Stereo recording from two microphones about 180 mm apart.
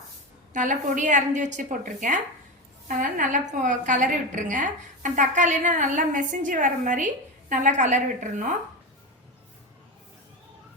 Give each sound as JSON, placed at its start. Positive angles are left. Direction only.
{"t": 0.5, "sound": "a woman's voice", "side_deg": -45}